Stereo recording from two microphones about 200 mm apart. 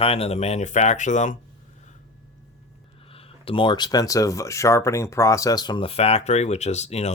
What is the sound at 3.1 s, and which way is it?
Speech, 30° left (ahead or behind).